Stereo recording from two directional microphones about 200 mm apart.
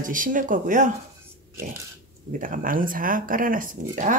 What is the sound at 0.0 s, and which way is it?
Speech, 40° right (ahead or behind).